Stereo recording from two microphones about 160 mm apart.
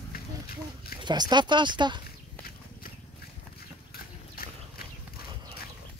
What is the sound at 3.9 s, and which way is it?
Horse, 75° left (ahead or behind).